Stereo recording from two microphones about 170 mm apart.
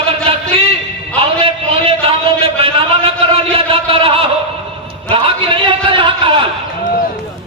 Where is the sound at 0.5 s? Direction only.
30° right (ahead or behind).